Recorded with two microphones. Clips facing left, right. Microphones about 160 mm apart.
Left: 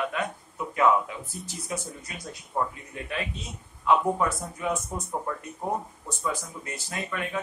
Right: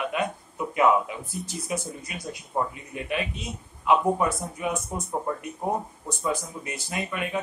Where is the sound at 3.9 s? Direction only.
15° right (ahead or behind).